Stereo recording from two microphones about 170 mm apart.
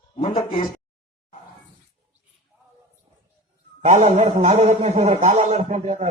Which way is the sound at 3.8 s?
40° right (ahead or behind).